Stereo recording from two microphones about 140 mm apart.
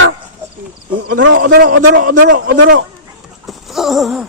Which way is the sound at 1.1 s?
85° right.